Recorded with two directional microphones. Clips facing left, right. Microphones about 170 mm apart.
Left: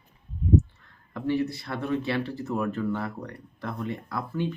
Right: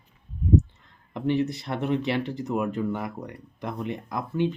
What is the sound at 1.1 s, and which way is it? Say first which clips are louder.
Speech: right 2 dB; 20° right (ahead or behind).